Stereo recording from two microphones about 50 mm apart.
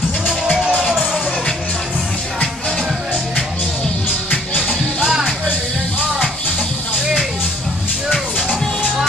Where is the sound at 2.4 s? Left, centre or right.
Centre.